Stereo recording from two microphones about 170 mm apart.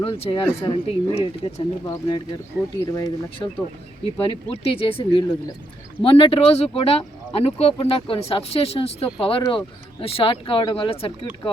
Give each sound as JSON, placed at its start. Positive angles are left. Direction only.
{"t": 0.0, "sound": "speech", "side_deg": 30}
{"t": 1.8, "sound": "speech", "side_deg": 20}